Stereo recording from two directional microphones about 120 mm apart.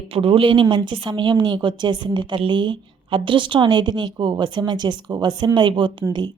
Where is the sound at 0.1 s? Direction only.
50° right (ahead or behind).